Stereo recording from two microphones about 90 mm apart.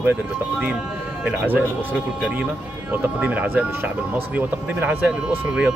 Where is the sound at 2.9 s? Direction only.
15° right (ahead or behind).